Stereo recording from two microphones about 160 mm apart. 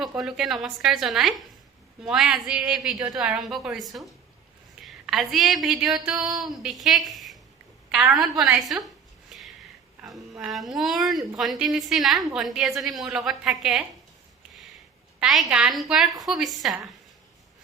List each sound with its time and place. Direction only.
0.2 s a woman's voice: centre (ahead or behind)
10.0 s a sound: 20° right (ahead or behind)
10.3 s a woman's voice: centre (ahead or behind)
15.2 s a woman's voice: 5° right (ahead or behind)